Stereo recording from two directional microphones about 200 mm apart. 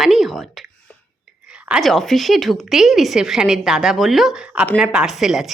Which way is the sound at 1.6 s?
Centre (ahead or behind).